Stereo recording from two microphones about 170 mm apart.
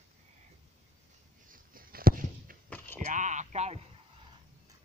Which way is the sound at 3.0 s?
45° right (ahead or behind).